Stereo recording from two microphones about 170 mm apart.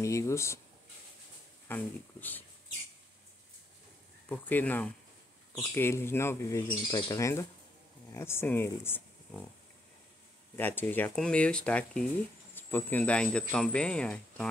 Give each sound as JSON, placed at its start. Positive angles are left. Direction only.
{"t": 0.0, "sound": "speech", "side_deg": 15}
{"t": 1.7, "sound": "speech", "side_deg": 10}
{"t": 4.3, "sound": "speech", "side_deg": 10}
{"t": 10.5, "sound": "speech", "side_deg": 10}